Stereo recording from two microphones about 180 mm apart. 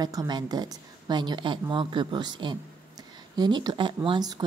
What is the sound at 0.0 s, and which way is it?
A woman's voice, 20° right (ahead or behind).